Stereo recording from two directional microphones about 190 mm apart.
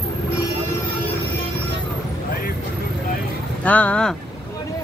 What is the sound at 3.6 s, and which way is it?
Speech, 10° left (ahead or behind).